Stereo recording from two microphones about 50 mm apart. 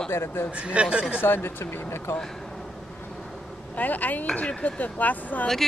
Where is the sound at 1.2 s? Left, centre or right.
Left.